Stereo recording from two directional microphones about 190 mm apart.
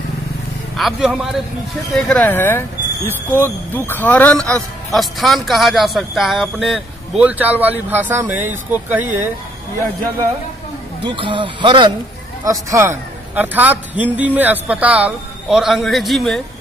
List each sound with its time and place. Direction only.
0.7 s speech: centre (ahead or behind)
11.1 s speech: 25° right (ahead or behind)
12.4 s a man's voice: 15° right (ahead or behind)